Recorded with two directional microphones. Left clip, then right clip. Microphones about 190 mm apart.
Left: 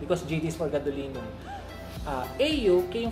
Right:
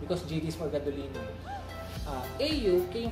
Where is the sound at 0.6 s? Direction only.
15° left (ahead or behind).